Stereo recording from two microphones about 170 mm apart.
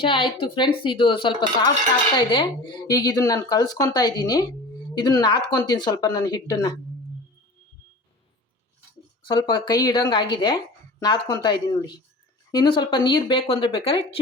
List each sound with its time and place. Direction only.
0.0 s speech: 30° left (ahead or behind)
9.2 s speech: 25° left (ahead or behind)